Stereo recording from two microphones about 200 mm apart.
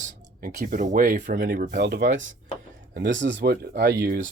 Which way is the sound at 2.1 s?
40° right (ahead or behind).